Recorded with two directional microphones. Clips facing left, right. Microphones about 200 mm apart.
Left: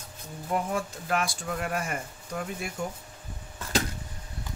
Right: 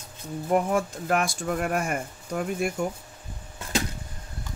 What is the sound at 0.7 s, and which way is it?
Speech, 45° right (ahead or behind).